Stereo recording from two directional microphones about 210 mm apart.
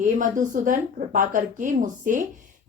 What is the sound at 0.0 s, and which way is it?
A woman's voice, 40° right (ahead or behind).